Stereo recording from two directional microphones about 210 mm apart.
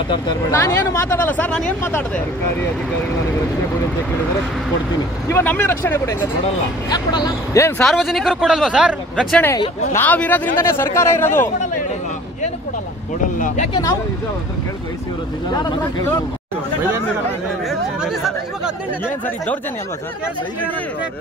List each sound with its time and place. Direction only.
0.1 s speech: 15° left (ahead or behind)
5.3 s speech: 10° left (ahead or behind)
7.8 s speech: centre (ahead or behind)
17.6 s speech: centre (ahead or behind)